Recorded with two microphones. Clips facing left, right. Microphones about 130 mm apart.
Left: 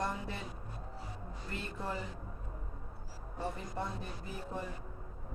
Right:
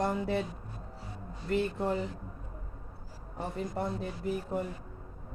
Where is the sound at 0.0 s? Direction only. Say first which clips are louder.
Right 8 dB; 75° right (ahead or behind).